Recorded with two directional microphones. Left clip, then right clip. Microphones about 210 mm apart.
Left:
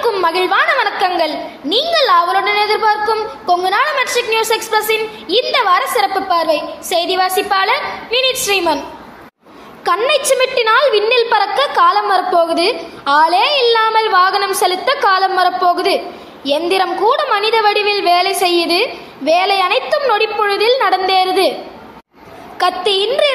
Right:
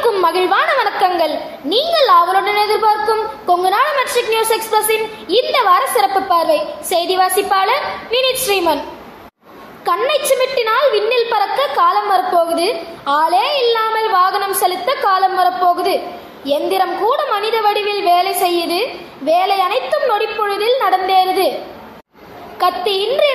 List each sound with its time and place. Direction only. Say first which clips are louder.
0.0 s a woman's voice: even; 10° left (ahead or behind)
9.8 s a woman's voice: left 1 dB; 20° left (ahead or behind)
22.6 s a woman's voice: left 1 dB; 25° left (ahead or behind)